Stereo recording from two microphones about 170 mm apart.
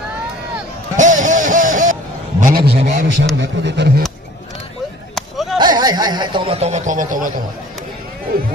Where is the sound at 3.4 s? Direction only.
85° right.